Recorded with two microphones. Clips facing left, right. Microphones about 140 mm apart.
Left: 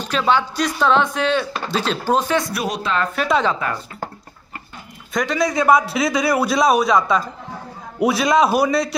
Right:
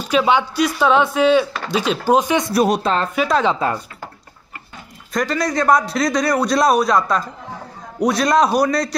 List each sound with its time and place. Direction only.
0.0 s speech: 10° right (ahead or behind)
2.7 s speech: 45° right (ahead or behind)
3.2 s a man's voice: centre (ahead or behind)
5.1 s a man's voice: centre (ahead or behind)